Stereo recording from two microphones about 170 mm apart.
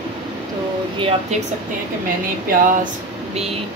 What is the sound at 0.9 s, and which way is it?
Speech, 35° right (ahead or behind).